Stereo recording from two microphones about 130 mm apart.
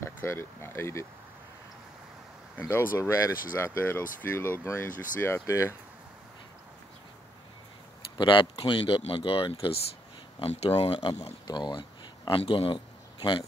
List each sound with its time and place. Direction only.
0.0 s speech: 20° left (ahead or behind)
2.6 s speech: 20° left (ahead or behind)
8.2 s speech: 40° left (ahead or behind)
11.4 s speech: 35° left (ahead or behind)